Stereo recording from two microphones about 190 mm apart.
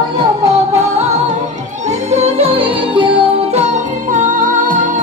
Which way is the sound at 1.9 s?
35° right (ahead or behind).